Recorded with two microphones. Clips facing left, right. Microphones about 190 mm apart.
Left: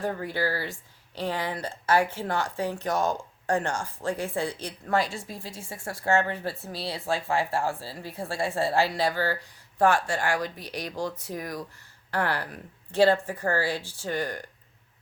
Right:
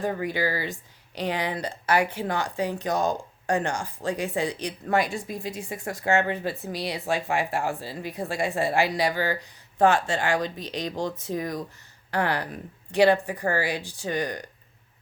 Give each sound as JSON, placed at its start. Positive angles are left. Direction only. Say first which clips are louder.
{"t": 0.0, "sound": "speech", "louder": "right 2 dB", "side_deg": -15}